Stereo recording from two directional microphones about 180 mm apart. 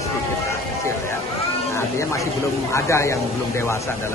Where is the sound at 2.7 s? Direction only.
15° left (ahead or behind).